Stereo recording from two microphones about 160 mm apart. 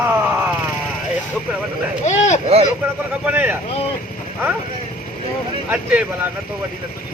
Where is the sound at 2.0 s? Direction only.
45° left (ahead or behind).